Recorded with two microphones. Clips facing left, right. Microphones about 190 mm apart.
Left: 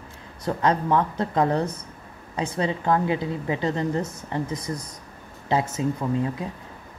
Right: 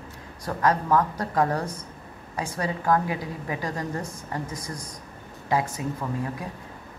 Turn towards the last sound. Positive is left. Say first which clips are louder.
# left 5 dB
turn(degrees=25)  # may be behind; listen again after turning